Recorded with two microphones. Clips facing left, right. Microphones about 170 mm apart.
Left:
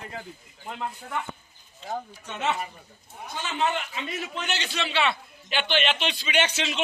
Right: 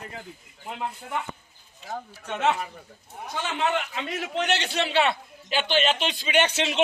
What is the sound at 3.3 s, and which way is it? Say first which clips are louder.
A man's voice: right 1 dB; 65° right (ahead or behind).